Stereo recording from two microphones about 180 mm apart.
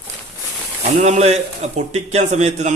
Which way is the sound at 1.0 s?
40° right (ahead or behind).